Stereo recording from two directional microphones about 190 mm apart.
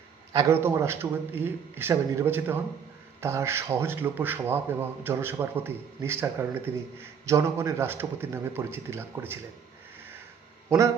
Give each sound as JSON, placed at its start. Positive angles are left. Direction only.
{"t": 0.3, "sound": "a man's voice", "side_deg": -15}
{"t": 10.7, "sound": "a man's voice", "side_deg": -15}